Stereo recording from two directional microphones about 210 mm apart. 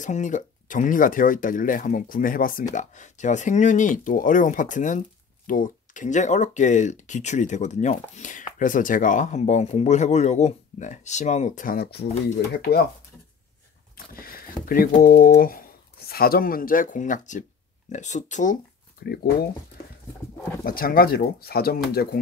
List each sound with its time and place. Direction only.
0.0 s speech: 35° left (ahead or behind)
13.9 s speech: 45° left (ahead or behind)
20.6 s speech: 45° left (ahead or behind)